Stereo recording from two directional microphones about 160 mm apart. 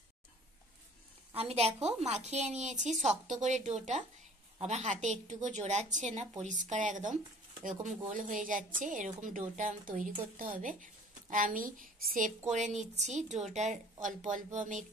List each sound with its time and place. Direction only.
1.3 s a woman's voice: 40° right (ahead or behind); by 12.3 s 60° right (ahead or behind)
12.5 s a woman's voice: 45° right (ahead or behind)